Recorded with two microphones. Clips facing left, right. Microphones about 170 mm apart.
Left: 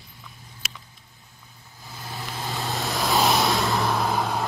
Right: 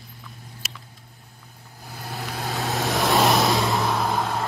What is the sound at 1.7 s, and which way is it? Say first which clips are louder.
Vehicle: right 3 dB; 60° right (ahead or behind).